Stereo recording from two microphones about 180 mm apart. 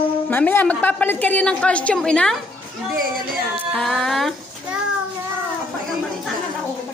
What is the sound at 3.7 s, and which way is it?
Female singing, centre (ahead or behind).